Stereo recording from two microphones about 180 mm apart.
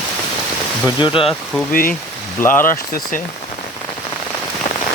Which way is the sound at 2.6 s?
50° left (ahead or behind).